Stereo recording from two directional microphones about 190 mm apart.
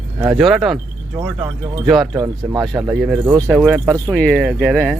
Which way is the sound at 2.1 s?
15° right (ahead or behind).